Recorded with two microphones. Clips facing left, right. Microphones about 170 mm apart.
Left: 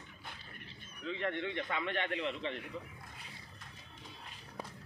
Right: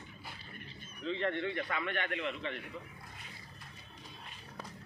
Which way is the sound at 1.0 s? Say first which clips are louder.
Right 3 dB; 10° left (ahead or behind).